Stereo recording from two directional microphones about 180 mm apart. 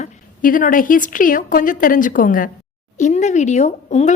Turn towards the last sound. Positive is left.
turn(degrees=40)  # may be behind; listen again after turning